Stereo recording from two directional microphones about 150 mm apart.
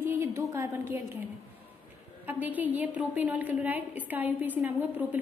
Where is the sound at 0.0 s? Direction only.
15° right (ahead or behind).